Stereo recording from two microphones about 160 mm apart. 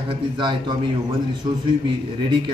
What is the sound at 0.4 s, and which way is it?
Speech, 30° right (ahead or behind).